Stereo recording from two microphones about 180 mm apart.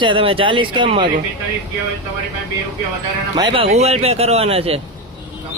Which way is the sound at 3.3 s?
30° right (ahead or behind).